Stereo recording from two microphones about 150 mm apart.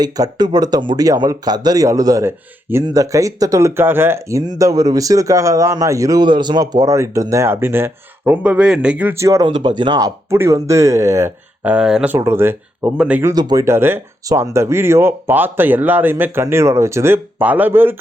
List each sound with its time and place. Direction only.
0.0 s speech: 25° right (ahead or behind); by 12.1 s 5° right (ahead or behind)
12.1 s speech: 15° right (ahead or behind)
13.3 s speech: 25° right (ahead or behind)